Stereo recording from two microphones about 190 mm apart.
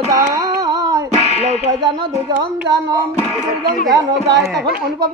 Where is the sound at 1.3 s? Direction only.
35° right (ahead or behind).